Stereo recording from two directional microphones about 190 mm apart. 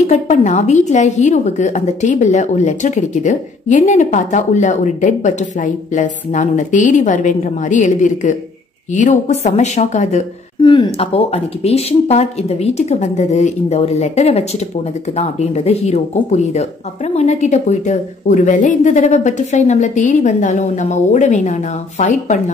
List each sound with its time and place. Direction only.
0.0 s a woman's voice: 40° left (ahead or behind)